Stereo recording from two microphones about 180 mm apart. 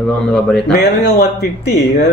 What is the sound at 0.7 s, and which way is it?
A man's voice, 65° left (ahead or behind).